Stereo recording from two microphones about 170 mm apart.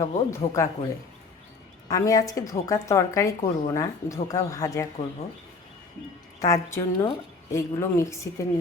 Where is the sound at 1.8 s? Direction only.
20° left (ahead or behind).